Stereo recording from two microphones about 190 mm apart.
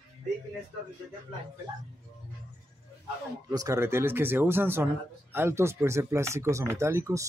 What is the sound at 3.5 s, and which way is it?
Speech, 15° right (ahead or behind).